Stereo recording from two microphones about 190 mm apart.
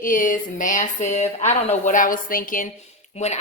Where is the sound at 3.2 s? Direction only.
35° left (ahead or behind).